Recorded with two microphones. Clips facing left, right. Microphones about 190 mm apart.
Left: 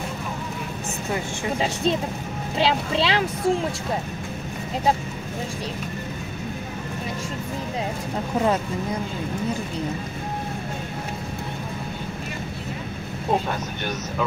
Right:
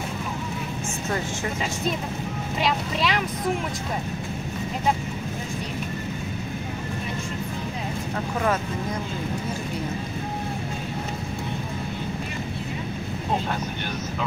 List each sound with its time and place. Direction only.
2.6 s speech: 30° left (ahead or behind)